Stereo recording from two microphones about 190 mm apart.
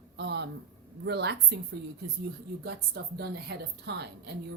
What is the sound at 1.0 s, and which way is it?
Speech, 65° right (ahead or behind).